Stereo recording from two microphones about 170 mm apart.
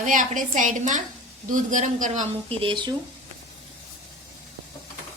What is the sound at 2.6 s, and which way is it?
Speech, 30° right (ahead or behind).